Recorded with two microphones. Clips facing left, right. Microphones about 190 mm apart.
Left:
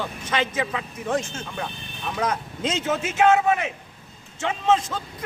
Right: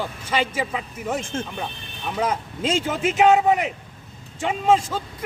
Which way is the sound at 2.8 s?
15° right (ahead or behind).